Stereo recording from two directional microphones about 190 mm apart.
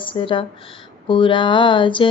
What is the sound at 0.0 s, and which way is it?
Speech, 25° left (ahead or behind).